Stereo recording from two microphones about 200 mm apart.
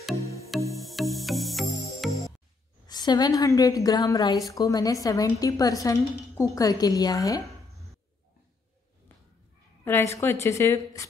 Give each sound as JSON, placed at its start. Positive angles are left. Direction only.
{"t": 0.7, "sound": "music", "side_deg": 0}
{"t": 2.0, "sound": "music", "side_deg": 15}
{"t": 2.9, "sound": "a woman's voice", "side_deg": 20}
{"t": 9.8, "sound": "a woman's voice", "side_deg": 10}